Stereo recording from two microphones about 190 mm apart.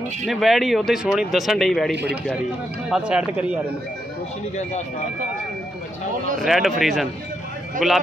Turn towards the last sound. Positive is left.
turn(degrees=0)  # may be behind; listen again after turning